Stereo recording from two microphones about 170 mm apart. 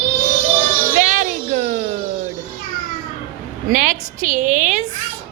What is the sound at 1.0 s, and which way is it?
Speech, 50° right (ahead or behind).